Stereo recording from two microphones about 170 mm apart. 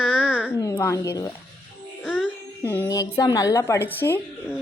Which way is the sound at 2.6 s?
15° left (ahead or behind).